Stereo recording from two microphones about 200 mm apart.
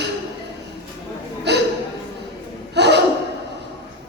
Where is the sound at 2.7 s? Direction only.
60° right (ahead or behind).